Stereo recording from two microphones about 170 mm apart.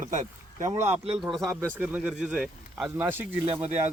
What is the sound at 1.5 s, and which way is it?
Speech, 15° right (ahead or behind).